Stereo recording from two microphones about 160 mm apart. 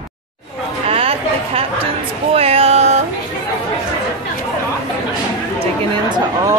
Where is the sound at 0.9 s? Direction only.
35° right (ahead or behind).